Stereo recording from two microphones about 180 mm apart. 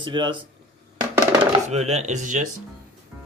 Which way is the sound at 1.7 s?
40° right (ahead or behind).